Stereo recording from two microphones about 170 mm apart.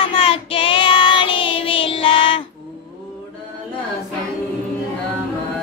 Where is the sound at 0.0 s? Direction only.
35° left (ahead or behind).